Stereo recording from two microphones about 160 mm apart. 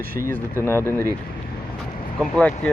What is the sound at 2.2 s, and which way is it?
Speech, 5° left (ahead or behind).